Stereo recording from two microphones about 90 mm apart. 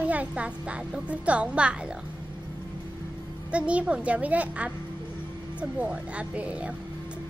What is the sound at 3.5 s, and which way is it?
A woman's voice, 15° right (ahead or behind).